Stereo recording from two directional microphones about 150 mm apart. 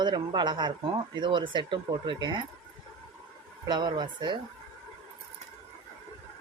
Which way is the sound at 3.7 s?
30° right (ahead or behind).